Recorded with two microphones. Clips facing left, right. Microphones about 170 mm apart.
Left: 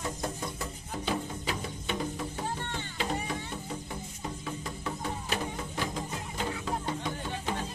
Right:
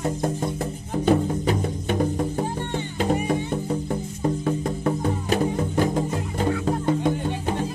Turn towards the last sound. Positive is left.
turn(degrees=-45)  # may be behind; listen again after turning